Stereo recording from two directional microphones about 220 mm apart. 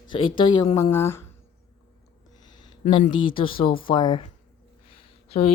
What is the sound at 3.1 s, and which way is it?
A woman's voice, 25° left (ahead or behind).